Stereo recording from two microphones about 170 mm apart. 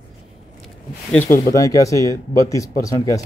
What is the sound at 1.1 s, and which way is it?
Speech, 15° left (ahead or behind).